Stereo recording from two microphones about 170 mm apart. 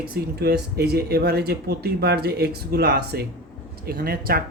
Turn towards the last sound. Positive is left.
turn(degrees=-60)  # may be behind; listen again after turning